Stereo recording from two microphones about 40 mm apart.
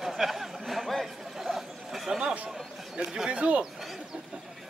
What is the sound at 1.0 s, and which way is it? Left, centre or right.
Chatter, centre.